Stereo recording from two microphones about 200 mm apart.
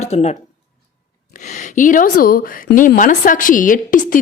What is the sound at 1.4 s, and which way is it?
A woman's voice, 35° left (ahead or behind).